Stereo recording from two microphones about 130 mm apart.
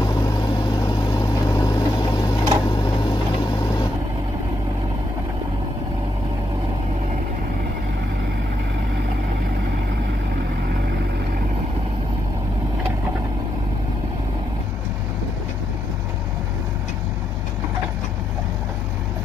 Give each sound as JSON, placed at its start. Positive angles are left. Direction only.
{"t": 0.7, "sound": "vehicle", "side_deg": 30}